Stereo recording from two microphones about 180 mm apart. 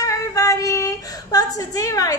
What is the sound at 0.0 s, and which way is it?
A woman's voice, 20° left (ahead or behind).